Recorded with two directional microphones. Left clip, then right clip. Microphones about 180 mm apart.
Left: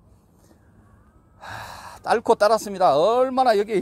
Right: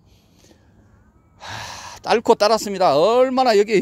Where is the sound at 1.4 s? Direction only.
45° right (ahead or behind); by 3.8 s 60° right (ahead or behind).